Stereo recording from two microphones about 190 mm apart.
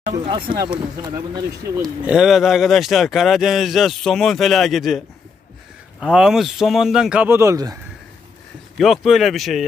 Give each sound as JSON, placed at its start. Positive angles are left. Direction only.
{"t": 0.3, "sound": "speech", "side_deg": -25}
{"t": 1.8, "sound": "speech", "side_deg": 0}
{"t": 8.7, "sound": "speech", "side_deg": 0}